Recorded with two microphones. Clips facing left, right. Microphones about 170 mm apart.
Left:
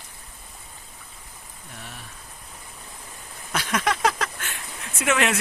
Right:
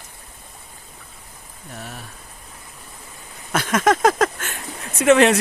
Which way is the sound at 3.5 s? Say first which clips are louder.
Right 7 dB; 50° right (ahead or behind).